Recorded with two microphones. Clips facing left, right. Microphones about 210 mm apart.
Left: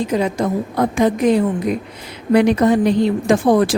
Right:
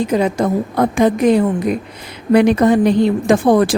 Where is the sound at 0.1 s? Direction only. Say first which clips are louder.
Right 3 dB; 60° right (ahead or behind).